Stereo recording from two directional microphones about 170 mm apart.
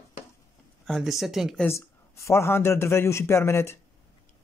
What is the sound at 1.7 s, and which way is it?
Speech, 15° left (ahead or behind).